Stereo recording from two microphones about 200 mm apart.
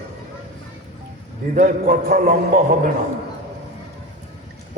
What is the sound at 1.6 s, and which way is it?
A man's voice, 45° right (ahead or behind).